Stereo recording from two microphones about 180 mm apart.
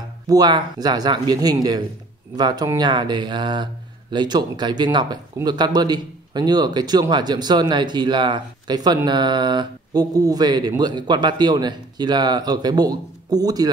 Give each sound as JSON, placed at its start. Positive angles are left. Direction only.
{"t": 0.3, "sound": "speech", "side_deg": -20}